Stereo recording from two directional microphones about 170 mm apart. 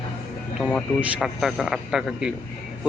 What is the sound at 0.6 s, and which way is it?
A man's voice, 5° left (ahead or behind).